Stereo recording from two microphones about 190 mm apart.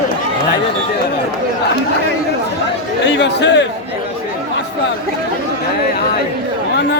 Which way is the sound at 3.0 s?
70° left (ahead or behind).